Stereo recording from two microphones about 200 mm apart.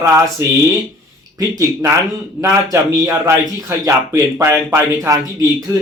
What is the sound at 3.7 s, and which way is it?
Speech, 15° right (ahead or behind).